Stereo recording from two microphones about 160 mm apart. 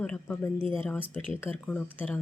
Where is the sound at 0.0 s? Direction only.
5° left (ahead or behind).